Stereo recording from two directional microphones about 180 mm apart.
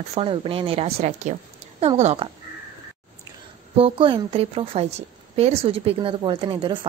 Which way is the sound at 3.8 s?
30° right (ahead or behind).